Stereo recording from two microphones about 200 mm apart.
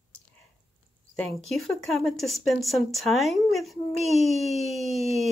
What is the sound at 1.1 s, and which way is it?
Speech, 5° left (ahead or behind).